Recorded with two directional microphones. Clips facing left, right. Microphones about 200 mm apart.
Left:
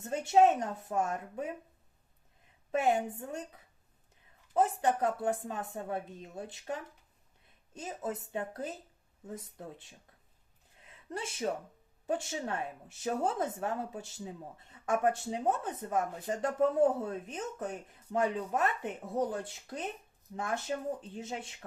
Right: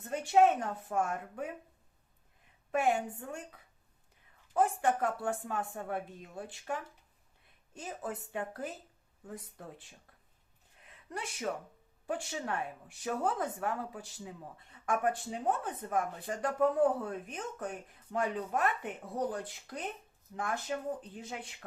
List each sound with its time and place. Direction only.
0.0 s speech: 20° left (ahead or behind)
2.7 s speech: 20° left (ahead or behind)
10.8 s speech: 25° left (ahead or behind)